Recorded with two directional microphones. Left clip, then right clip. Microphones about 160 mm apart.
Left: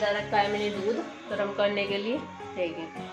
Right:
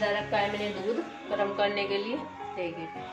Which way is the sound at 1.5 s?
20° left (ahead or behind).